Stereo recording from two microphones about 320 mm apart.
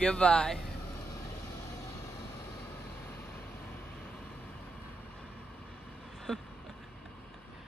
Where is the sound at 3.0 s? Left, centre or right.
Centre.